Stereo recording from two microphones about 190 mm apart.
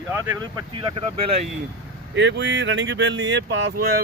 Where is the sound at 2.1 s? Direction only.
70° right (ahead or behind).